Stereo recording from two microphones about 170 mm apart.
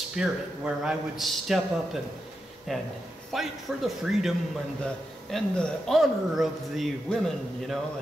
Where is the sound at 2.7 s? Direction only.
Centre (ahead or behind).